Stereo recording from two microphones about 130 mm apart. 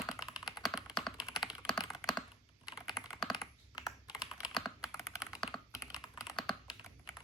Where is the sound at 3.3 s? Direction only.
30° left (ahead or behind).